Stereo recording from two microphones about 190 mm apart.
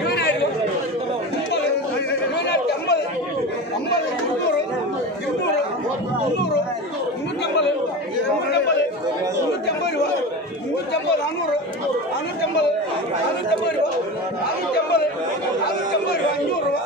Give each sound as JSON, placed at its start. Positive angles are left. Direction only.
{"t": 0.0, "sound": "chatter", "side_deg": 55}
{"t": 2.3, "sound": "chatter", "side_deg": 65}